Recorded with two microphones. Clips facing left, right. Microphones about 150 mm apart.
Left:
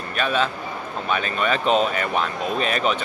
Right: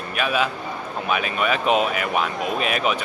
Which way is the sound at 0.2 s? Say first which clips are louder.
Even; 10° right (ahead or behind).